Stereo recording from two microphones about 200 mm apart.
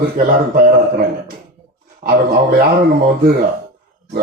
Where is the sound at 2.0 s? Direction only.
50° right (ahead or behind).